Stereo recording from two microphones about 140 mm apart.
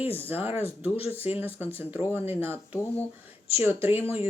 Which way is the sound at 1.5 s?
15° right (ahead or behind).